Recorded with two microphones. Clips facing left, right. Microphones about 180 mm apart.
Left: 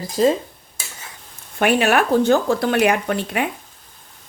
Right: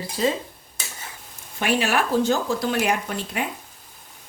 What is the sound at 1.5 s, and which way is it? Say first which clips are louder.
A woman's voice: left 6 dB; 60° left (ahead or behind).